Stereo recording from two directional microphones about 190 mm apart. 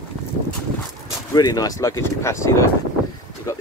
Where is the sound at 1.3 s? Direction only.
20° left (ahead or behind).